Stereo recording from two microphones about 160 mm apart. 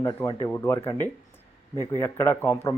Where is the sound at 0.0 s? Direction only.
20° left (ahead or behind).